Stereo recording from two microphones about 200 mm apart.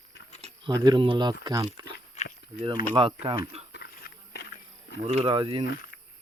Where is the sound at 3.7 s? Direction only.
55° left (ahead or behind).